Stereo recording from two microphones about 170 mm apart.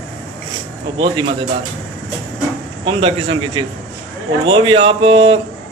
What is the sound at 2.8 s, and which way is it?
Speech, 30° right (ahead or behind).